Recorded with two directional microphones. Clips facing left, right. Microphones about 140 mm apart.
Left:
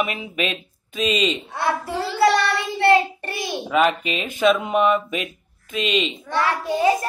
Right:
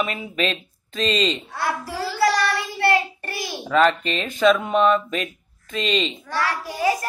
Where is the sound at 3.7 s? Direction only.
10° left (ahead or behind).